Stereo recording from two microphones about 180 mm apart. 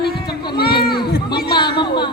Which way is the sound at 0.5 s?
60° left (ahead or behind).